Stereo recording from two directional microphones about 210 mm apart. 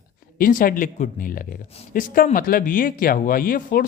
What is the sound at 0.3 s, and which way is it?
Speech, 40° left (ahead or behind).